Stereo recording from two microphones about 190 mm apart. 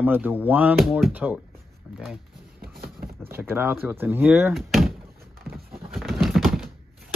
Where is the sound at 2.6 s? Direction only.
55° right (ahead or behind).